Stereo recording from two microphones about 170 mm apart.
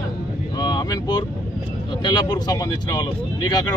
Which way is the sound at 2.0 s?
25° left (ahead or behind).